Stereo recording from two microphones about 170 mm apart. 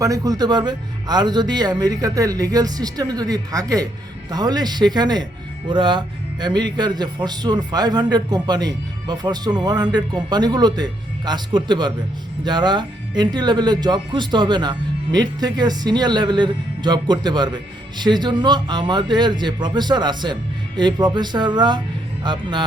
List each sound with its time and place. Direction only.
0.0 s speech: 20° right (ahead or behind)